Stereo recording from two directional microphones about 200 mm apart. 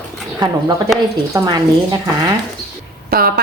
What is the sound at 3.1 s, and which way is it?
Speech, 50° right (ahead or behind).